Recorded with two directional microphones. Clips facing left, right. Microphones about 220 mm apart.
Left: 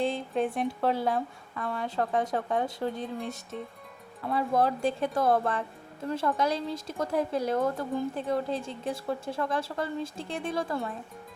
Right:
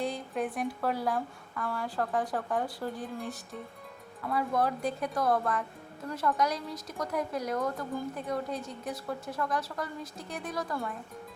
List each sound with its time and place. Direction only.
0.0 s speech: 25° left (ahead or behind)